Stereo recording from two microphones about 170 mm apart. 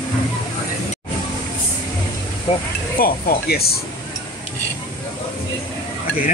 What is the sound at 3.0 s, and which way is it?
Speech, 65° left (ahead or behind).